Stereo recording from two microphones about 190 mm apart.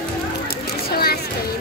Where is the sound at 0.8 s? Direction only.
55° left (ahead or behind).